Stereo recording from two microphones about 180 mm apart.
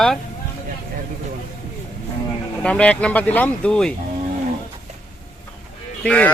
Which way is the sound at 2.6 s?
5° left (ahead or behind).